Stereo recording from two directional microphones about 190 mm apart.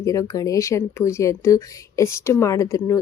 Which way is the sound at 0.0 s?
15° left (ahead or behind).